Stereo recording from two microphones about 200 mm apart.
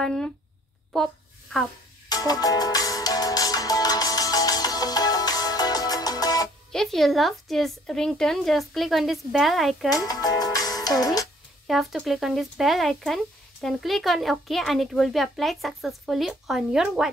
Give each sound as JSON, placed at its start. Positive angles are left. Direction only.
{"t": 0.0, "sound": "speech", "side_deg": 0}
{"t": 0.9, "sound": "a sound", "side_deg": 0}
{"t": 2.0, "sound": "music", "side_deg": 20}
{"t": 6.7, "sound": "speech", "side_deg": 0}
{"t": 9.8, "sound": "speech", "side_deg": 20}
{"t": 11.6, "sound": "speech", "side_deg": 0}